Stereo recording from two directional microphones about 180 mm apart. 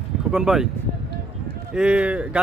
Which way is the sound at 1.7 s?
5° right (ahead or behind).